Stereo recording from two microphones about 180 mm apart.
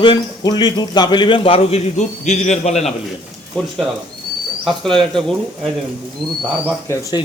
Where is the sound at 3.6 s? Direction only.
5° left (ahead or behind).